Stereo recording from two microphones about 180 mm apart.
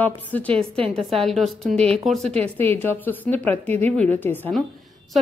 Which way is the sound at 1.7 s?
35° right (ahead or behind).